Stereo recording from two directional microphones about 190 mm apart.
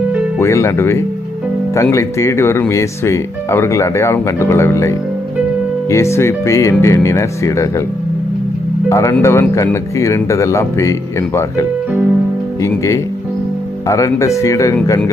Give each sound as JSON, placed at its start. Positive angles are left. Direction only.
{"t": 0.3, "sound": "speech", "side_deg": 15}
{"t": 8.9, "sound": "speech", "side_deg": 15}
{"t": 12.6, "sound": "speech", "side_deg": 15}